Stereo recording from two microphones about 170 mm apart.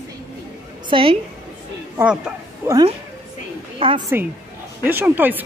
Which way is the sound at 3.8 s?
30° right (ahead or behind).